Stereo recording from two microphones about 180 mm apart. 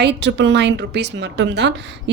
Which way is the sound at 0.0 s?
75° right (ahead or behind).